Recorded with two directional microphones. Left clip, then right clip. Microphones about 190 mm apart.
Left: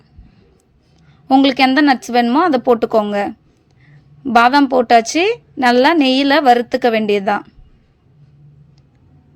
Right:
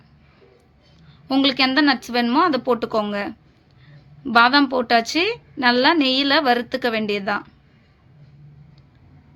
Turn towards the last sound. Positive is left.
turn(degrees=30)  # may be behind; listen again after turning